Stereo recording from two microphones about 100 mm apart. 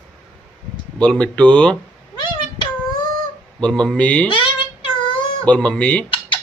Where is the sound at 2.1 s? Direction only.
50° left (ahead or behind).